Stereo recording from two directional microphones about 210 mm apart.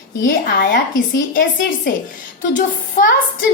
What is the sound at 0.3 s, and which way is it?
Speech, 40° left (ahead or behind).